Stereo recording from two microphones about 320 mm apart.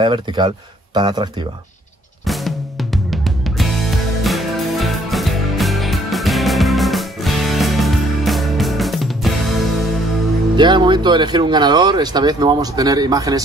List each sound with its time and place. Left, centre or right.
0.0 s speech: centre
2.2 s music: centre
10.5 s speech: centre